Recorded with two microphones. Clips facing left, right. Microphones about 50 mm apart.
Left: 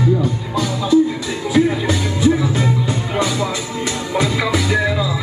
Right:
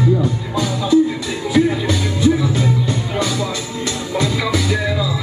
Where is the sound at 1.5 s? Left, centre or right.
Centre.